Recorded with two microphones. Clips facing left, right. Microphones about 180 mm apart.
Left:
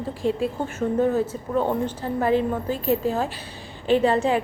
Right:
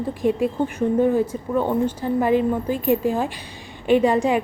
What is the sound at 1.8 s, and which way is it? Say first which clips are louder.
A woman's voice: right 3 dB; 15° right (ahead or behind).